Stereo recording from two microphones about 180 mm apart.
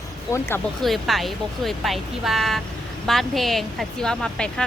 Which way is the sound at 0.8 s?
Centre (ahead or behind).